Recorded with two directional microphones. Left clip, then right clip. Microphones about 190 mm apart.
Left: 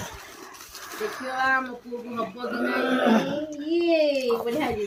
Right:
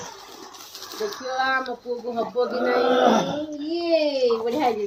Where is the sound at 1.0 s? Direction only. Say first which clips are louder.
Right 2 dB; 40° left (ahead or behind).